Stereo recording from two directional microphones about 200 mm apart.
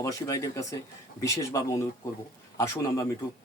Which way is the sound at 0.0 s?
15° left (ahead or behind).